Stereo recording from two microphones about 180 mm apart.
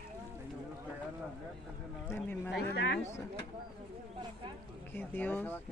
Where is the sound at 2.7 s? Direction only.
75° left (ahead or behind).